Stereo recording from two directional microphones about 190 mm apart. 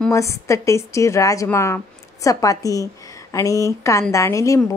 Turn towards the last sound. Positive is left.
turn(degrees=15)  # may be behind; listen again after turning